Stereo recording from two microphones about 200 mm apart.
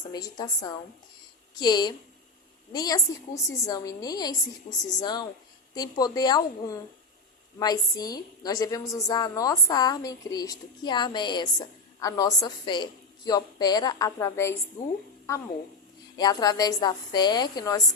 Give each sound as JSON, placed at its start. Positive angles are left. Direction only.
{"t": 0.1, "sound": "a woman's voice", "side_deg": 20}
{"t": 16.1, "sound": "a woman's voice", "side_deg": 20}